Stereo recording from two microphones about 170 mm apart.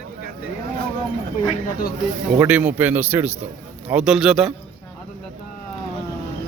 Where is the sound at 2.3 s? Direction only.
10° right (ahead or behind).